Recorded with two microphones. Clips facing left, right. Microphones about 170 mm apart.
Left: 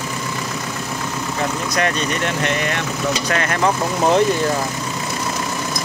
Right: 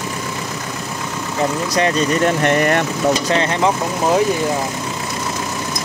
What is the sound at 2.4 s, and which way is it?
Speech, 50° right (ahead or behind).